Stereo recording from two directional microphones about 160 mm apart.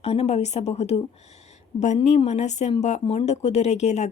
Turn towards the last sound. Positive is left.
turn(degrees=45)  # may be behind; listen again after turning